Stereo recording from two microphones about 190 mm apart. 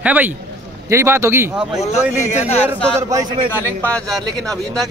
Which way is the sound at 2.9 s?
15° right (ahead or behind).